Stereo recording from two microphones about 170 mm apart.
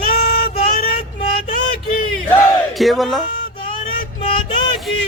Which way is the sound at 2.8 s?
Centre (ahead or behind).